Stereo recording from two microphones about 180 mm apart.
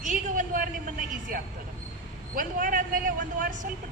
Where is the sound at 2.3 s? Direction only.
50° right (ahead or behind).